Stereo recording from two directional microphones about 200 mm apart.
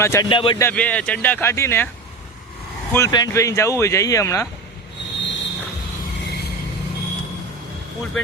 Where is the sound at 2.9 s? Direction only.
15° left (ahead or behind).